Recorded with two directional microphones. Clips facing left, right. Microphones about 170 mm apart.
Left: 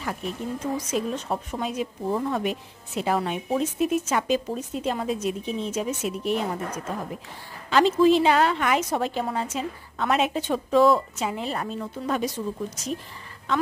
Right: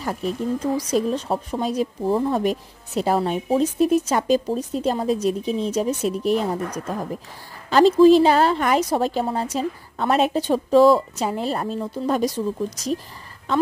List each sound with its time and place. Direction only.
0.0 s speech: 40° right (ahead or behind)
7.7 s speech: 35° right (ahead or behind)